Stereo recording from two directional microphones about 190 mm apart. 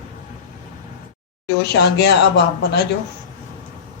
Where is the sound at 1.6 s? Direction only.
60° left (ahead or behind).